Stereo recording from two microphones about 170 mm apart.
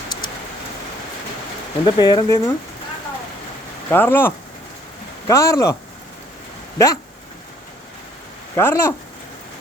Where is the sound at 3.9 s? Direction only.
10° left (ahead or behind).